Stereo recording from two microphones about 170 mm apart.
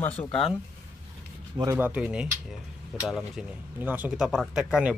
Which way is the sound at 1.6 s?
15° right (ahead or behind).